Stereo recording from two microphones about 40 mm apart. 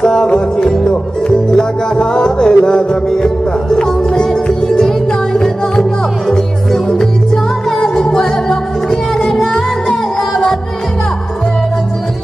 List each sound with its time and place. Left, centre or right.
0.0 s music: centre